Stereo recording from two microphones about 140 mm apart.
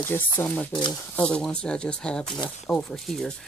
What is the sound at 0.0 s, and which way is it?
Speech, 15° left (ahead or behind).